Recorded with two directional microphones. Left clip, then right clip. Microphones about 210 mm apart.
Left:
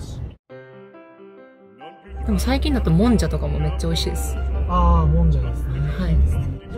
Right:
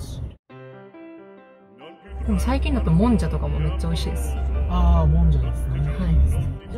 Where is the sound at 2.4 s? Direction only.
15° left (ahead or behind).